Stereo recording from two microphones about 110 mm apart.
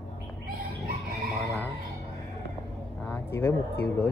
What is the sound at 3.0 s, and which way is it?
Speech, 20° left (ahead or behind).